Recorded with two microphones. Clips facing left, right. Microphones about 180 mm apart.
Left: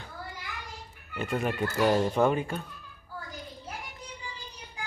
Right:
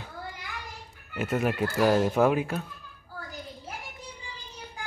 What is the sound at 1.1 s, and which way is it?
Speech, 5° right (ahead or behind).